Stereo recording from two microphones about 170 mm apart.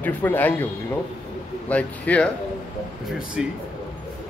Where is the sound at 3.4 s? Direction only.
5° right (ahead or behind).